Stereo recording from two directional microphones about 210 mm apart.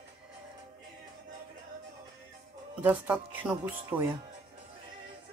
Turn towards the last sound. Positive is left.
turn(degrees=-5)  # may be behind; listen again after turning